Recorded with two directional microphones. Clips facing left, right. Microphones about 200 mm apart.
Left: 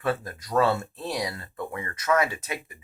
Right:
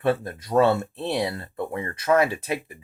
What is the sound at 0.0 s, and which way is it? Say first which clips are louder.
Speech: right 5 dB; 30° right (ahead or behind).